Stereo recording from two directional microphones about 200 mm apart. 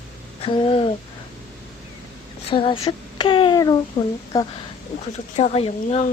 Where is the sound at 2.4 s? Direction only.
25° left (ahead or behind).